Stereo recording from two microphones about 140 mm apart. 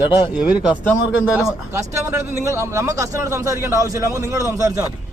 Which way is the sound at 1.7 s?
20° right (ahead or behind).